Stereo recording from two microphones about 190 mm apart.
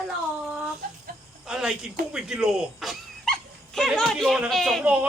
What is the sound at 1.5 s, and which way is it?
Speech, 5° right (ahead or behind).